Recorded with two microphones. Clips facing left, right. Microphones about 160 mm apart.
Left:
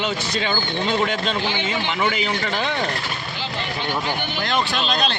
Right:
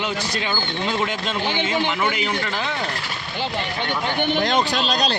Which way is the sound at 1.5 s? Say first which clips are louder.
Right 2 dB; 55° right (ahead or behind).